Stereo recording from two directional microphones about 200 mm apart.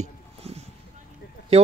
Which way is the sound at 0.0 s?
30° right (ahead or behind).